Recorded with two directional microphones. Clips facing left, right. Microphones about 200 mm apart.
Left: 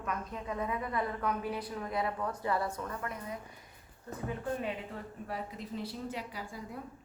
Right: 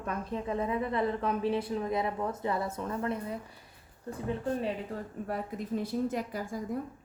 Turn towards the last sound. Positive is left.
turn(degrees=-45)  # may be behind; listen again after turning